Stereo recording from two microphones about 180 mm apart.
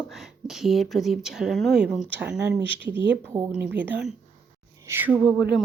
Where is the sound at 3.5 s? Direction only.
10° right (ahead or behind).